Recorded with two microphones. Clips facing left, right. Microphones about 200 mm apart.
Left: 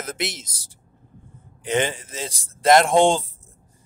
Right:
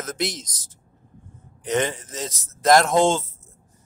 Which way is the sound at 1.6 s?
25° left (ahead or behind).